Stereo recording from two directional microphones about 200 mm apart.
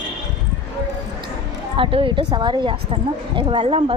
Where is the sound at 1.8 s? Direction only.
25° right (ahead or behind).